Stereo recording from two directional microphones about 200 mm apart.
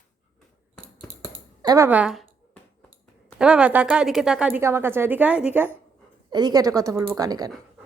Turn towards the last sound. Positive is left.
turn(degrees=-20)  # may be behind; listen again after turning